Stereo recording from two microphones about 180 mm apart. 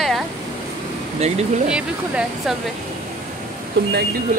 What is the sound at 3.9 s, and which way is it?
Speech, 60° right (ahead or behind).